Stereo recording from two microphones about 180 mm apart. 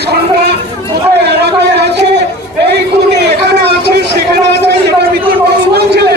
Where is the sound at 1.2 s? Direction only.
65° right (ahead or behind).